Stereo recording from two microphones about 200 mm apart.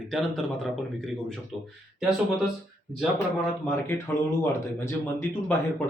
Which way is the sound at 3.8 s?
15° left (ahead or behind).